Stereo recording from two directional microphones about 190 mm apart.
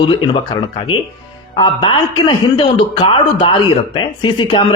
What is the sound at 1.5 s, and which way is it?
A man's voice, 25° left (ahead or behind).